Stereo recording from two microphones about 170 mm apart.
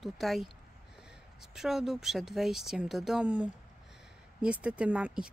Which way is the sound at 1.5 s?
Centre (ahead or behind).